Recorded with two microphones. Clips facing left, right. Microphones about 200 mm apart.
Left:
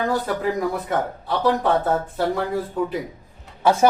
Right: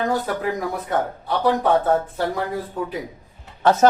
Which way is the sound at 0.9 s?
Centre (ahead or behind).